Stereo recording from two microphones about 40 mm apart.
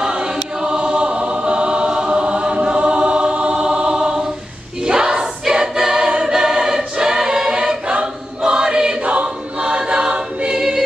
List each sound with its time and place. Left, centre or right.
0.0 s choir: right